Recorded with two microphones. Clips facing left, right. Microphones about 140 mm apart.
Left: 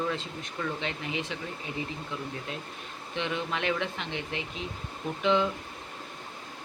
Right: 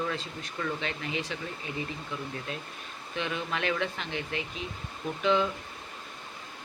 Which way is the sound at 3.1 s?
25° left (ahead or behind).